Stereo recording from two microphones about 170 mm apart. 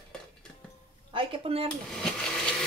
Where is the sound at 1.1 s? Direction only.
30° right (ahead or behind).